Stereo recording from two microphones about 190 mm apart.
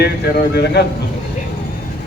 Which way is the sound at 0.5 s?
60° left (ahead or behind).